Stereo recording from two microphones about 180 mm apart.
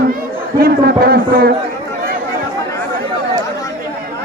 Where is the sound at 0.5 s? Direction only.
60° right (ahead or behind).